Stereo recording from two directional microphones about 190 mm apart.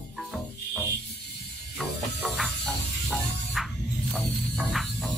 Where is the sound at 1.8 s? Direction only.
Centre (ahead or behind).